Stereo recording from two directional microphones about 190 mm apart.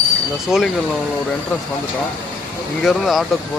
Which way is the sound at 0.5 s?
Centre (ahead or behind).